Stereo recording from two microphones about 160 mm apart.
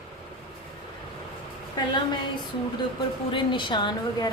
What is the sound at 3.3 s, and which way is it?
Speech, 30° left (ahead or behind).